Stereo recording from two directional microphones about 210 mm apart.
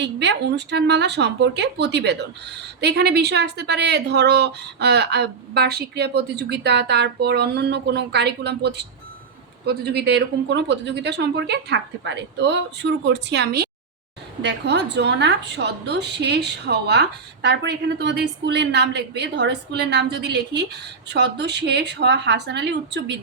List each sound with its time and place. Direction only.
0.0 s a woman's voice: 55° right (ahead or behind)